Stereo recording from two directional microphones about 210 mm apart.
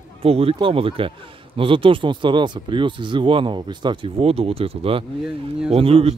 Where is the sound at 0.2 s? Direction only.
25° right (ahead or behind).